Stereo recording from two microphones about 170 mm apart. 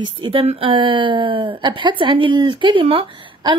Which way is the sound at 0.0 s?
30° right (ahead or behind).